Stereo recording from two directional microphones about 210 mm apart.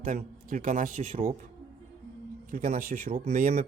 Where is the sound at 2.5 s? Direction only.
40° right (ahead or behind).